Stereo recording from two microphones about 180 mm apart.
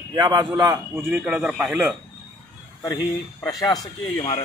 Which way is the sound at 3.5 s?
20° left (ahead or behind).